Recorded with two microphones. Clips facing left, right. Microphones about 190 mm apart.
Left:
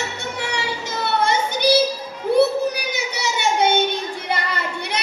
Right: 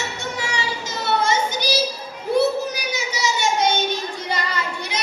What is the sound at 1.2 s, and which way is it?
Child singing, 60° left (ahead or behind).